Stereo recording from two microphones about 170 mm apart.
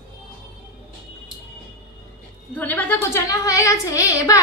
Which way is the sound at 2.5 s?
10° left (ahead or behind).